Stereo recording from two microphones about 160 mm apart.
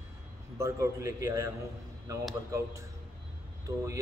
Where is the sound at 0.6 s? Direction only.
20° right (ahead or behind).